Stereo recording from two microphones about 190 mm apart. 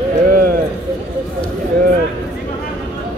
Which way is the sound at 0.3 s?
50° right (ahead or behind).